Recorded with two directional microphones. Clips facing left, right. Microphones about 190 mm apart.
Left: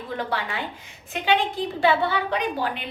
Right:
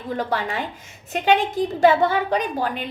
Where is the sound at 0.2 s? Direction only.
40° right (ahead or behind).